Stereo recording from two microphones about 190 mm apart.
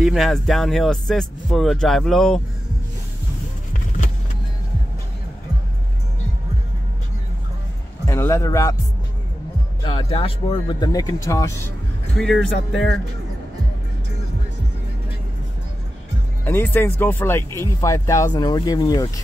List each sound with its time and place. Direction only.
0.0 s speech: centre (ahead or behind)
8.1 s speech: 15° left (ahead or behind)
9.8 s speech: 25° left (ahead or behind)
12.2 s speech: centre (ahead or behind)
16.4 s speech: 10° left (ahead or behind)